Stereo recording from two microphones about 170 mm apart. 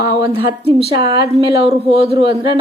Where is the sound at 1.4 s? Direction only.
35° right (ahead or behind).